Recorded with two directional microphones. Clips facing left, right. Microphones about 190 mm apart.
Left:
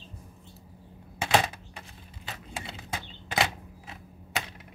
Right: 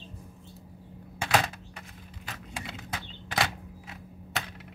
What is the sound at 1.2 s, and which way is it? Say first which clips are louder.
Computer keyboard: left 2 dB; 25° left (ahead or behind).